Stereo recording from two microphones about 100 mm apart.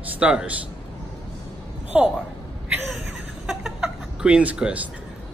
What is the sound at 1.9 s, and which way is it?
Speech, 10° right (ahead or behind).